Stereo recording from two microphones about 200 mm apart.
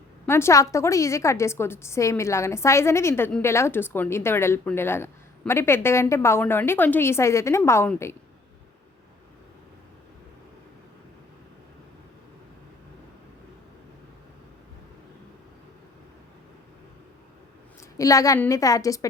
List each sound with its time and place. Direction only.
0.3 s a woman's voice: 15° left (ahead or behind)
17.9 s a woman's voice: 15° left (ahead or behind)